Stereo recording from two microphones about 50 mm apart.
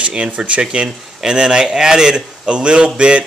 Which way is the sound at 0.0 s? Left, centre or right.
Centre.